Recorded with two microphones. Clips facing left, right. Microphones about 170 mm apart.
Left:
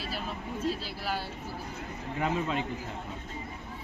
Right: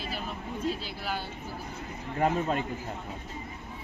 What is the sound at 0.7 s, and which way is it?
Speech, 5° left (ahead or behind).